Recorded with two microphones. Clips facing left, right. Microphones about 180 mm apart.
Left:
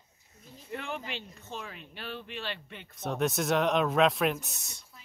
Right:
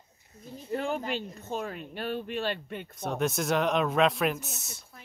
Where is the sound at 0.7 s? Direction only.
40° right (ahead or behind).